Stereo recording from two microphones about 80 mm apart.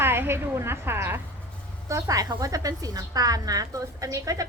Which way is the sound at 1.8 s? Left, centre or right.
Right.